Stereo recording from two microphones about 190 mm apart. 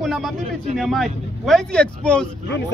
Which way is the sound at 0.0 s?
Centre (ahead or behind).